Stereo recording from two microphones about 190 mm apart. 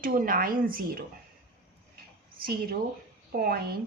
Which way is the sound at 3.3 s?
50° right (ahead or behind).